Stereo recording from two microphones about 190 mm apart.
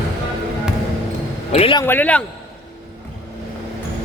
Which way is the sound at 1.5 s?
30° left (ahead or behind).